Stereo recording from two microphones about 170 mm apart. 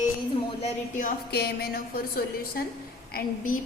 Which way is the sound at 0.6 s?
50° left (ahead or behind).